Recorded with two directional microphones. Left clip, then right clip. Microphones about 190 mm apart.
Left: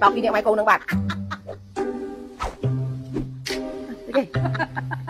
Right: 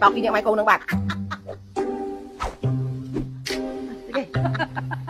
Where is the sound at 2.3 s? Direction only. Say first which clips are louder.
Even; centre (ahead or behind).